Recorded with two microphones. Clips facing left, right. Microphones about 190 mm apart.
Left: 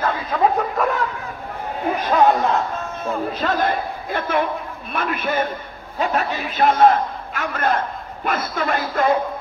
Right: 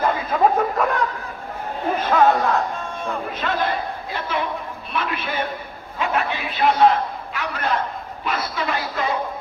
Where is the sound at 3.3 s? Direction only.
40° left (ahead or behind).